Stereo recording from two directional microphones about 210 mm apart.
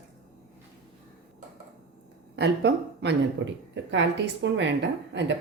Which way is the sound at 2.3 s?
55° right (ahead or behind).